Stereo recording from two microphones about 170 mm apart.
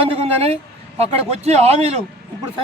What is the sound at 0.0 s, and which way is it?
A man's voice, 35° right (ahead or behind).